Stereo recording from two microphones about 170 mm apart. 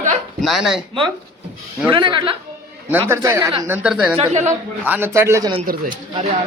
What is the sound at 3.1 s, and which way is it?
Speech, 15° right (ahead or behind).